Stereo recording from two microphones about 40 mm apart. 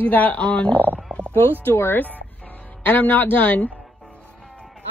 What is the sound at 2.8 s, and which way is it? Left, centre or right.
Speech, left.